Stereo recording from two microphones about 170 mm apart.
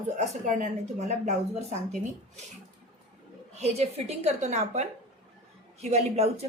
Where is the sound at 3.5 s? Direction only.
40° right (ahead or behind).